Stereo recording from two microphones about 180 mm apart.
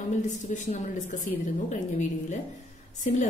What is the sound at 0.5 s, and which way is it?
A woman's voice, 45° left (ahead or behind).